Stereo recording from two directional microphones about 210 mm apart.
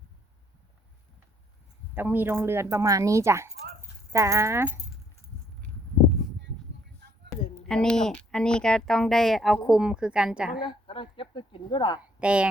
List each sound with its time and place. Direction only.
2.0 s speech: 10° right (ahead or behind)
7.7 s speech: 5° left (ahead or behind)
10.6 s speech: 25° left (ahead or behind)
11.9 s speech: 5° right (ahead or behind)